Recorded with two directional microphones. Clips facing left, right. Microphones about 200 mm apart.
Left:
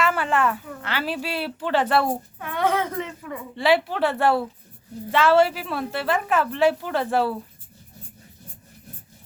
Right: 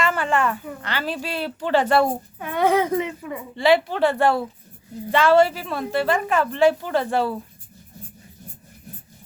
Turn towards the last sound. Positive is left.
turn(degrees=5)  # may be behind; listen again after turning